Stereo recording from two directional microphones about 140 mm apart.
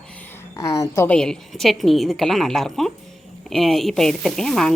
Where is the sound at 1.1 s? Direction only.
5° left (ahead or behind).